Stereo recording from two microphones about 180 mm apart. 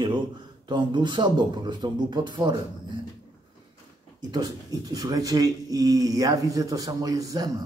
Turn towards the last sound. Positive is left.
turn(degrees=-20)  # may be behind; listen again after turning